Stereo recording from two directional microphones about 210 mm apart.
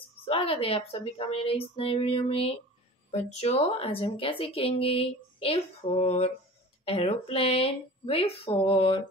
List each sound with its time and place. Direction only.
0.2 s speech: 25° left (ahead or behind)